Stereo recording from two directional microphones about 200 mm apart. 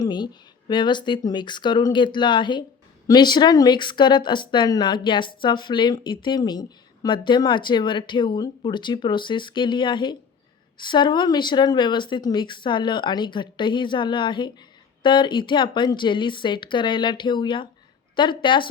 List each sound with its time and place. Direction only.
0.0 s speech: 20° left (ahead or behind)